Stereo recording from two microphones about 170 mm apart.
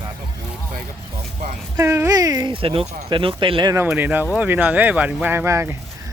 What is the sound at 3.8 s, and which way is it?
Speech, 10° right (ahead or behind).